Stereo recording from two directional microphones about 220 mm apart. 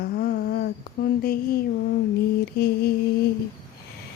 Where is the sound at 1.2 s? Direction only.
45° left (ahead or behind).